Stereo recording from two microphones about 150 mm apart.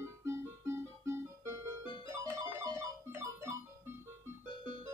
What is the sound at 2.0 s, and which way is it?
Music, 20° right (ahead or behind).